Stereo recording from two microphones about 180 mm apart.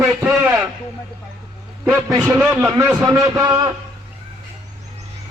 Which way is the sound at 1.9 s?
15° right (ahead or behind).